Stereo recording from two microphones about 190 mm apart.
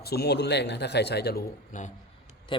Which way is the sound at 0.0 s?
55° left (ahead or behind).